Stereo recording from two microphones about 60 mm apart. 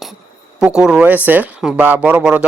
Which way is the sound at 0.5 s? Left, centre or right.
Centre.